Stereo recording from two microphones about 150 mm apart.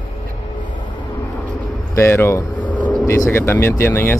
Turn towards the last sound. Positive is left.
turn(degrees=15)  # may be behind; listen again after turning